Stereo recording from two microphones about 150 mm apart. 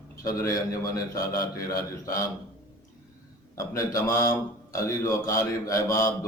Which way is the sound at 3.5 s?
20° left (ahead or behind).